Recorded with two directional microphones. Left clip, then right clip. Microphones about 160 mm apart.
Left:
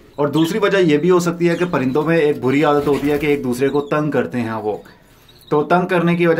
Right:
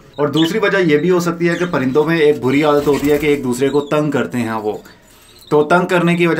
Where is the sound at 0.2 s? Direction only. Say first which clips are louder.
Right 2 dB; 10° left (ahead or behind).